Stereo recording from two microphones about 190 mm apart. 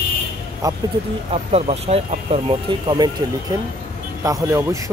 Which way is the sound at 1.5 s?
35° right (ahead or behind).